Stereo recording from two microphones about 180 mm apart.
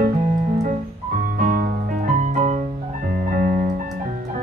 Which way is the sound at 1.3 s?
50° right (ahead or behind).